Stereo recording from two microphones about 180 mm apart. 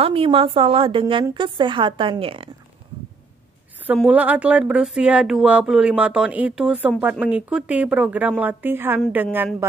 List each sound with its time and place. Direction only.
0.0 s a woman's voice: 30° right (ahead or behind)
4.0 s speech: 10° right (ahead or behind)